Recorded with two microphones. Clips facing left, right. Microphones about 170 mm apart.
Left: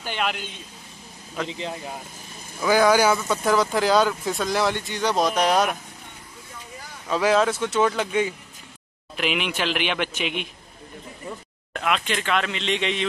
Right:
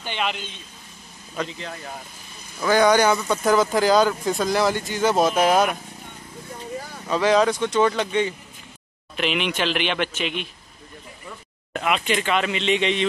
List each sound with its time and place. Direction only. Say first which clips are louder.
0.0 s speech: even; 5° left (ahead or behind)
1.5 s speech: left 3 dB; 20° left (ahead or behind)
2.6 s speech: right 1 dB; 5° left (ahead or behind)
7.1 s a man's voice: right 1 dB; 5° left (ahead or behind)
11.7 s speech: right 2 dB; 5° right (ahead or behind)